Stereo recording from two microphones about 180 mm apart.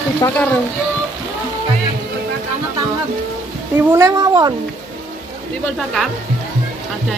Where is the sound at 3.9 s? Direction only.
20° right (ahead or behind).